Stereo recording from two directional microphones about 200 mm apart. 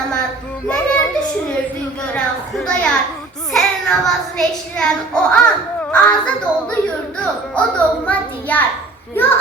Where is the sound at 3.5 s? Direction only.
5° left (ahead or behind).